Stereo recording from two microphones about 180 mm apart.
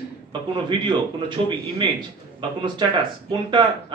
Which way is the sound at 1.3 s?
25° right (ahead or behind).